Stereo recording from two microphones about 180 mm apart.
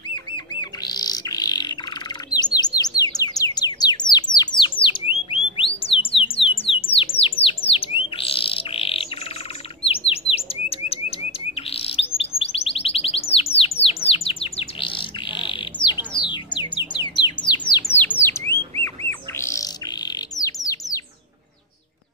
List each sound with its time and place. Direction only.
0.1 s bird: 25° left (ahead or behind)
5.3 s squawk: 30° left (ahead or behind)
8.2 s bird: 30° left (ahead or behind)
9.8 s chirp: 30° left (ahead or behind)
18.8 s bird: 15° left (ahead or behind)